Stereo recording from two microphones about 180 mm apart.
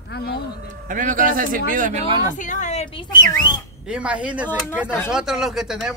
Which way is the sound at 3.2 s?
15° left (ahead or behind).